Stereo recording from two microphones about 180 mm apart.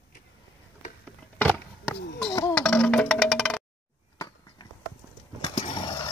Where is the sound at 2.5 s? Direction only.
5° left (ahead or behind).